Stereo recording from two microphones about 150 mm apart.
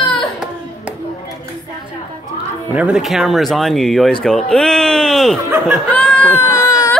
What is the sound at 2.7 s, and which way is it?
Speech, 10° right (ahead or behind).